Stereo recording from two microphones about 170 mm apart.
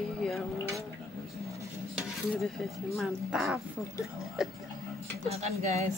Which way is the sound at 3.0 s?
Centre (ahead or behind).